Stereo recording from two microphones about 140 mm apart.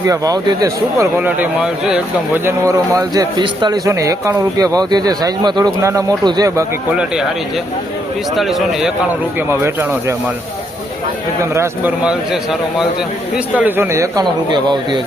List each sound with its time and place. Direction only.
0.0 s speech: 25° right (ahead or behind)
3.8 s speech: 25° right (ahead or behind)
6.9 s speech: 5° right (ahead or behind)
8.4 s a man's voice: centre (ahead or behind)
9.5 s speech: 15° right (ahead or behind)
11.5 s speech: 15° right (ahead or behind)
13.6 s speech: 15° right (ahead or behind)
14.5 s speech: 35° right (ahead or behind)